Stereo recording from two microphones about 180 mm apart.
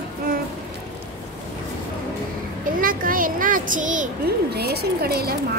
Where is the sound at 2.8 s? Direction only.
50° right (ahead or behind).